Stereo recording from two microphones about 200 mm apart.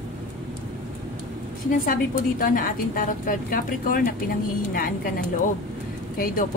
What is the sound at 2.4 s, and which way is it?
A woman's voice, 45° left (ahead or behind).